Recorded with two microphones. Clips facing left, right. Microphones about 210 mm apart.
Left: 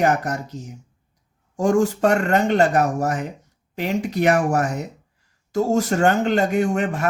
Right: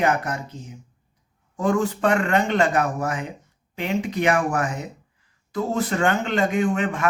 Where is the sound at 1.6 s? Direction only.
45° left (ahead or behind).